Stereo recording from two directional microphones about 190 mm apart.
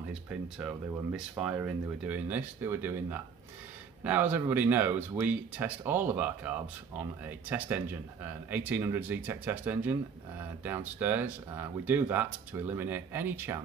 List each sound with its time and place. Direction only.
0.3 s speech: 5° right (ahead or behind)